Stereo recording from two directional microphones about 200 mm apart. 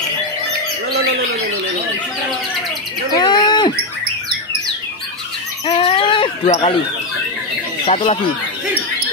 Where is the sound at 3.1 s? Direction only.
20° left (ahead or behind).